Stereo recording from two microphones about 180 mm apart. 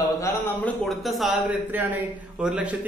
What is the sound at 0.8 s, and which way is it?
A man's voice, centre (ahead or behind).